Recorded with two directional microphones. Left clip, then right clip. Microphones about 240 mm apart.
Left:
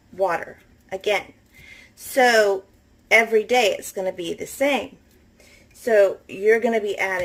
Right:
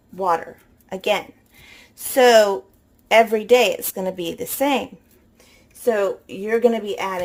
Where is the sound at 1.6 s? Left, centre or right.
Right.